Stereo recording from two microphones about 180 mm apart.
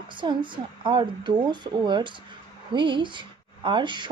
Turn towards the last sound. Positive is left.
turn(degrees=-25)  # may be behind; listen again after turning